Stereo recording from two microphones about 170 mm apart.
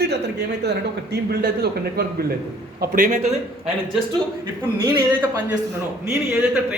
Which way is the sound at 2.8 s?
55° right (ahead or behind).